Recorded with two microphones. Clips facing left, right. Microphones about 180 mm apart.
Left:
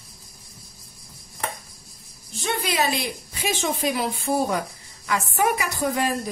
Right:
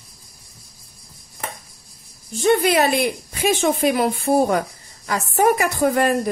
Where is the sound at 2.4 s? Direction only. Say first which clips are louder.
Right 9 dB; 50° right (ahead or behind).